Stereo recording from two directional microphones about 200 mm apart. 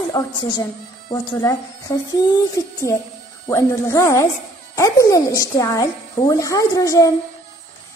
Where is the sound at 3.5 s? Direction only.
15° left (ahead or behind).